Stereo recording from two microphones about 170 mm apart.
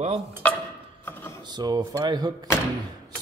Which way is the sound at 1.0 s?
15° left (ahead or behind).